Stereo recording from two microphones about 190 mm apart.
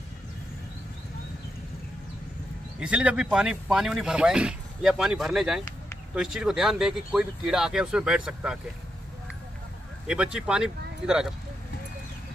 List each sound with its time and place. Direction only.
2.8 s speech: 5° right (ahead or behind)
10.0 s speech: 5° right (ahead or behind)